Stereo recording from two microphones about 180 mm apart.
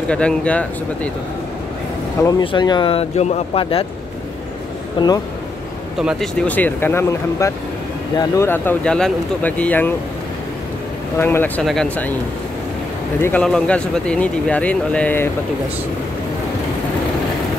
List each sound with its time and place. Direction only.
0.1 s speech: 5° left (ahead or behind)
2.2 s speech: 25° left (ahead or behind)
5.0 s speech: 25° left (ahead or behind)
5.9 s speech: centre (ahead or behind)
11.1 s speech: 10° left (ahead or behind)
13.2 s speech: 5° left (ahead or behind)